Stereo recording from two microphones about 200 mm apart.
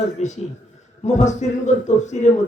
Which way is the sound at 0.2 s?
35° left (ahead or behind).